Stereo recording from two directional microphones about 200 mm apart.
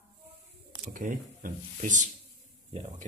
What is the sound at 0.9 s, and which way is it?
Speech, 40° right (ahead or behind).